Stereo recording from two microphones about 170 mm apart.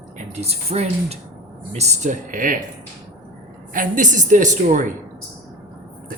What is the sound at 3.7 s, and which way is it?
Speech, 50° right (ahead or behind).